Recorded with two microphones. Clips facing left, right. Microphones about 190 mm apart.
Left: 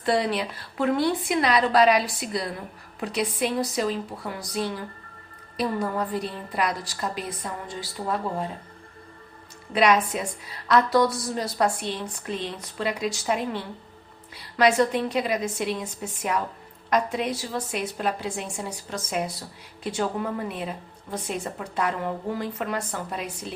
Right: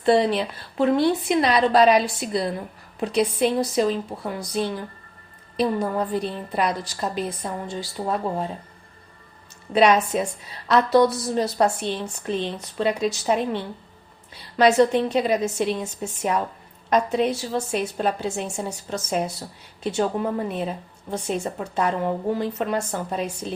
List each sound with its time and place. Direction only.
0.0 s a woman's voice: 25° right (ahead or behind)
9.7 s a woman's voice: 30° right (ahead or behind)